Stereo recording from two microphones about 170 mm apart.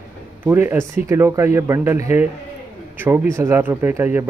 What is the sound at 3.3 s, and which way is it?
Speech, 15° right (ahead or behind).